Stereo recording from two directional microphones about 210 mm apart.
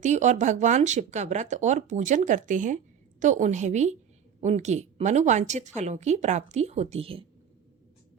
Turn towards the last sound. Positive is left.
turn(degrees=-25)  # may be behind; listen again after turning